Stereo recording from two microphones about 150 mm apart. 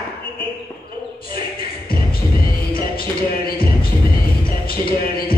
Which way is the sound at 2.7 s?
80° left.